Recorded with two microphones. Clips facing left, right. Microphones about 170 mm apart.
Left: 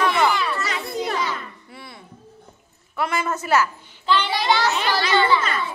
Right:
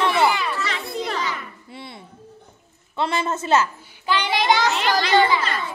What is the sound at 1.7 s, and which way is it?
A woman's voice, 25° right (ahead or behind).